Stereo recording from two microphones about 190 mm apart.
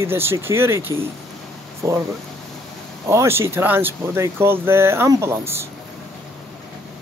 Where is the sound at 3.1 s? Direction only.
15° right (ahead or behind).